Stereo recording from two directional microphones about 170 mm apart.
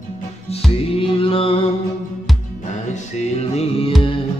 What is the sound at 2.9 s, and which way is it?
Music, 40° left (ahead or behind).